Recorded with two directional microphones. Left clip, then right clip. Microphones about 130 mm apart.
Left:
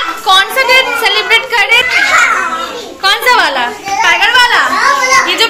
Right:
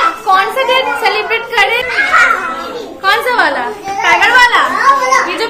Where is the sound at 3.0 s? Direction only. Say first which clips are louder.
Left 2 dB; 5° right (ahead or behind).